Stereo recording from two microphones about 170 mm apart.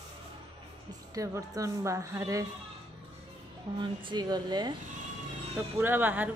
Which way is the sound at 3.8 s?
30° right (ahead or behind).